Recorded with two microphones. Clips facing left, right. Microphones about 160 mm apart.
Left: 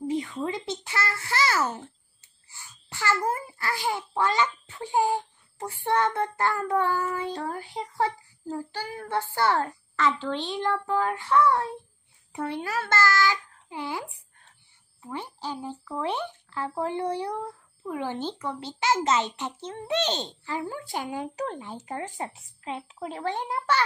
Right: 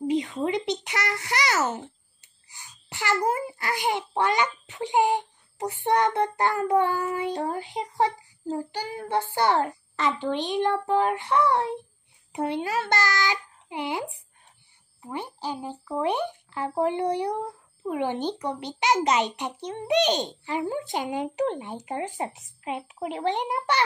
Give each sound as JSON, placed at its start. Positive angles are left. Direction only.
{"t": 0.0, "sound": "a child's voice", "side_deg": -20}
{"t": 4.9, "sound": "child singing", "side_deg": -20}
{"t": 12.3, "sound": "a child's voice", "side_deg": -20}
{"t": 15.0, "sound": "child singing", "side_deg": -15}
{"t": 17.8, "sound": "a child's voice", "side_deg": -20}